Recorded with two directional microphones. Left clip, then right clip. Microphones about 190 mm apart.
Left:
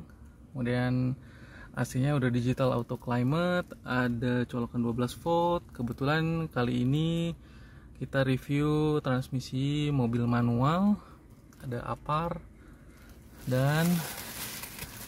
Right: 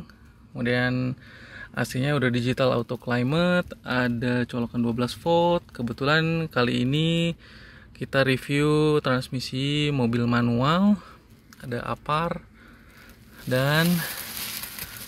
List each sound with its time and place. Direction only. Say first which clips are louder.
0.6 s speech: right 7 dB; 20° right (ahead or behind)
13.5 s speech: right 7 dB; 15° right (ahead or behind)